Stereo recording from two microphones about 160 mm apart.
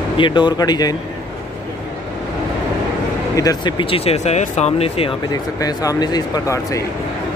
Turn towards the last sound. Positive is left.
turn(degrees=25)  # may be behind; listen again after turning